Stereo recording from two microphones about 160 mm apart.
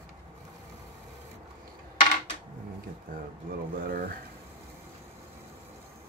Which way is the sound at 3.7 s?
65° right (ahead or behind).